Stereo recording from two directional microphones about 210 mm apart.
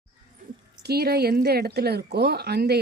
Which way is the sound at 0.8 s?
50° right (ahead or behind).